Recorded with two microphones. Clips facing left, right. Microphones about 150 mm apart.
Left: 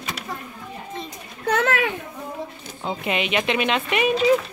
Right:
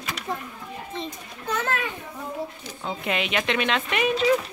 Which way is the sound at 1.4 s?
70° left (ahead or behind).